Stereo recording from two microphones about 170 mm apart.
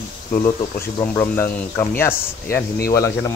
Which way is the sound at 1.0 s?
15° left (ahead or behind).